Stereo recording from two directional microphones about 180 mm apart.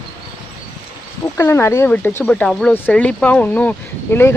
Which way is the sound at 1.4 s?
15° left (ahead or behind).